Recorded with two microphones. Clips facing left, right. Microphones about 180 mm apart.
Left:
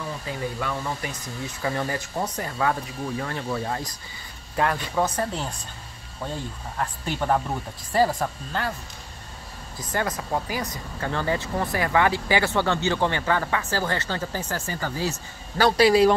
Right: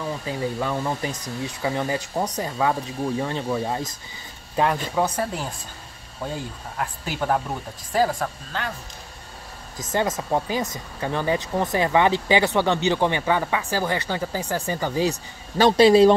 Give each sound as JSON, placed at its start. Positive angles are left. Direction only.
{"t": 0.3, "sound": "speech", "side_deg": -25}
{"t": 1.6, "sound": "speech", "side_deg": -15}
{"t": 4.9, "sound": "speech", "side_deg": -10}
{"t": 6.8, "sound": "speech", "side_deg": -5}
{"t": 9.9, "sound": "speech", "side_deg": -20}